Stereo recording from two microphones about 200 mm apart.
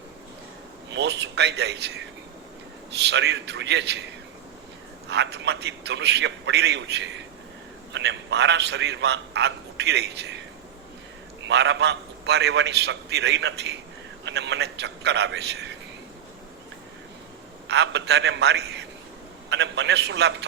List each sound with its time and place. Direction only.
0.9 s a man's voice: 60° right (ahead or behind)
3.0 s a man's voice: 60° right (ahead or behind)
5.0 s a man's voice: 60° right (ahead or behind)
11.4 s a man's voice: 60° right (ahead or behind)
17.7 s a man's voice: 60° right (ahead or behind)